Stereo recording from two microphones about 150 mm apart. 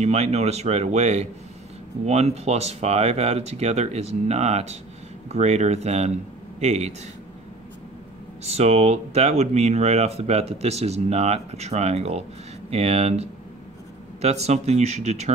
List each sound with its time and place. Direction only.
0.0 s speech: 45° right (ahead or behind)
8.5 s speech: 45° right (ahead or behind)